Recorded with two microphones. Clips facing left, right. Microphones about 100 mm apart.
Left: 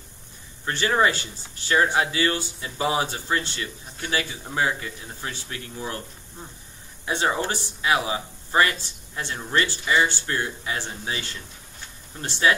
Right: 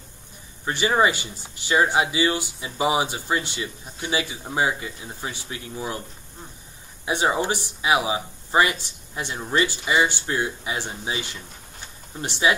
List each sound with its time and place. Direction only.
0.7 s speech: 15° right (ahead or behind)
7.1 s speech: 15° right (ahead or behind)